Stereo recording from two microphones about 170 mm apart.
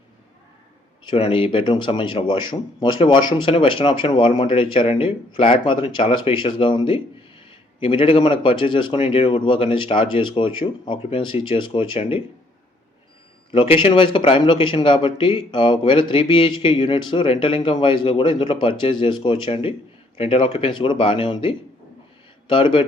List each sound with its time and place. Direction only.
1.0 s speech: 35° left (ahead or behind)
13.5 s speech: 30° left (ahead or behind)